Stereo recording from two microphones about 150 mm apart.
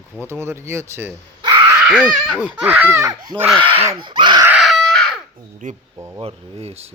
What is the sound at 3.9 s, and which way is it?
Speech, 30° right (ahead or behind).